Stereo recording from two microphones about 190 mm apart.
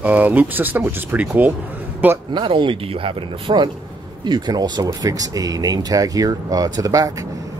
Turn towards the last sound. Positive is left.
turn(degrees=-20)  # may be behind; listen again after turning